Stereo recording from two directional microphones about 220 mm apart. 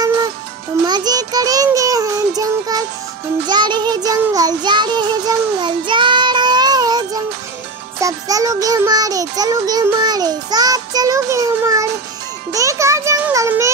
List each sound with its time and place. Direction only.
0.8 s child singing: 20° right (ahead or behind)
8.0 s music: 15° right (ahead or behind)
12.5 s a child's voice: 15° right (ahead or behind)